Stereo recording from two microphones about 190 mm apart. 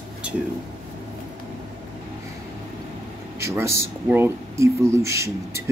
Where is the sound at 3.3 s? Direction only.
15° right (ahead or behind).